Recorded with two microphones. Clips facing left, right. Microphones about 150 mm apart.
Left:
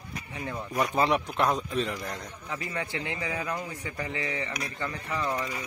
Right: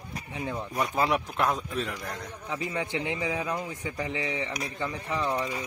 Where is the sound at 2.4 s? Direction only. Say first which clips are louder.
Right 3 dB; 15° right (ahead or behind).